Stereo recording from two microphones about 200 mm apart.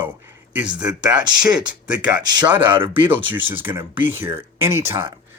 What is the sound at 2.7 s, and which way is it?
Speech, 25° right (ahead or behind).